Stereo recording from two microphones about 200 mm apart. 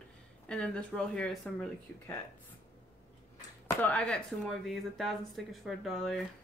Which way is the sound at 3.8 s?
5° left (ahead or behind).